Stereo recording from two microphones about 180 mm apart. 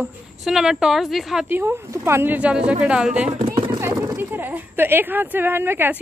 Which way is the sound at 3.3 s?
40° right (ahead or behind).